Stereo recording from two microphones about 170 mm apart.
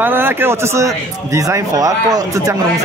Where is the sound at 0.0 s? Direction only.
10° right (ahead or behind).